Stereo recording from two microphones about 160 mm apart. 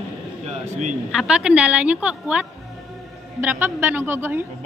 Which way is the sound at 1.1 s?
5° right (ahead or behind).